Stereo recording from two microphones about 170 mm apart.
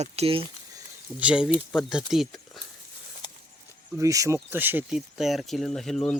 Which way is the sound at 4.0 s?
20° right (ahead or behind).